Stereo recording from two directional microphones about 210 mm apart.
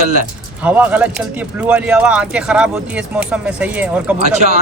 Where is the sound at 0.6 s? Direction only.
10° right (ahead or behind).